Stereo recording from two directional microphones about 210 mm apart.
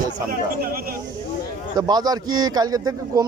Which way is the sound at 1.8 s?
20° right (ahead or behind).